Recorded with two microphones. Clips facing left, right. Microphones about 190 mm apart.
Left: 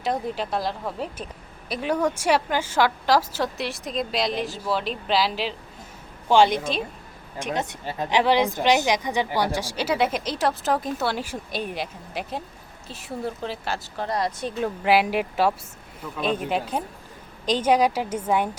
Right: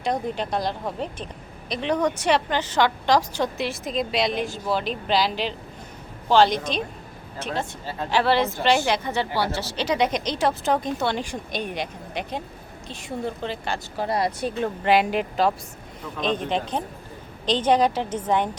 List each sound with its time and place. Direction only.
0.0 s a woman's voice: centre (ahead or behind)
14.5 s a woman's voice: 5° left (ahead or behind)